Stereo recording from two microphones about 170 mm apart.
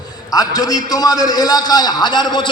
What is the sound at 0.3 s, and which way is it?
A man's voice, 20° left (ahead or behind).